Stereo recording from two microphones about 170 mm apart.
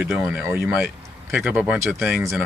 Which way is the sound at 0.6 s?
Centre (ahead or behind).